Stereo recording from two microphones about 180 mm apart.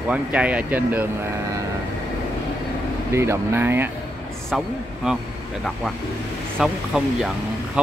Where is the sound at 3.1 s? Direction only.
15° right (ahead or behind).